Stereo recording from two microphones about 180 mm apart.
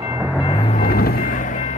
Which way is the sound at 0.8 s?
55° left (ahead or behind).